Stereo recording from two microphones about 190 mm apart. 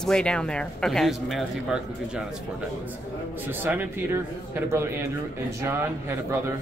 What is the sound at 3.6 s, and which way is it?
Speech, 10° right (ahead or behind).